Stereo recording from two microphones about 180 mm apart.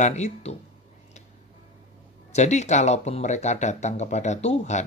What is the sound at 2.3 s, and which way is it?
Speech, 40° left (ahead or behind).